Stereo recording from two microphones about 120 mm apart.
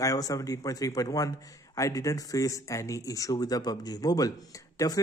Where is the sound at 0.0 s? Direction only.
30° left (ahead or behind).